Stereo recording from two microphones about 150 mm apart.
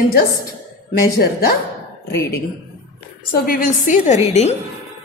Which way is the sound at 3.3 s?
70° left (ahead or behind).